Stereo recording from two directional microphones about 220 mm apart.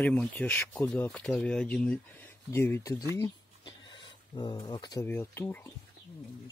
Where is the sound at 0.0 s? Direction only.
5° left (ahead or behind).